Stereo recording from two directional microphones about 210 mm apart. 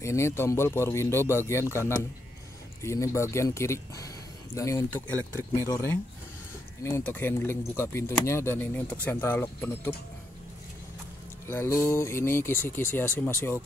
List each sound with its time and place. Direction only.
0.0 s speech: 15° left (ahead or behind)
11.4 s speech: 10° left (ahead or behind)